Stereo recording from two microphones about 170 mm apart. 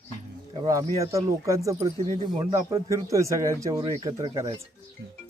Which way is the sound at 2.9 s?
20° right (ahead or behind).